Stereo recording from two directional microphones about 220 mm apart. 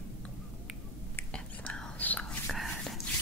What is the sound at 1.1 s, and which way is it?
Whispering, 5° left (ahead or behind).